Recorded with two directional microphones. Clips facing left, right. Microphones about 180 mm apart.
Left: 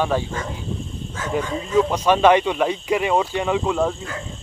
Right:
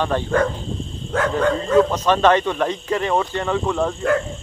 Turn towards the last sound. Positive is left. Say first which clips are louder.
# even
turn(degrees=10)  # may be behind; listen again after turning